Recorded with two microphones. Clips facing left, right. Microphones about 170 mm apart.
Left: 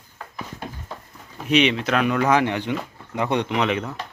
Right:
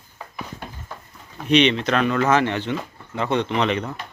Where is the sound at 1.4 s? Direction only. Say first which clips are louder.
Right 2 dB; 5° left (ahead or behind).